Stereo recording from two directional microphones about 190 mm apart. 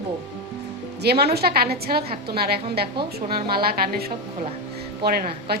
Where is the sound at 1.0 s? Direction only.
60° right (ahead or behind).